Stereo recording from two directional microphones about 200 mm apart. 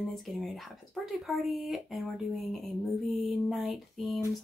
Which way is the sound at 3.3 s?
Centre (ahead or behind).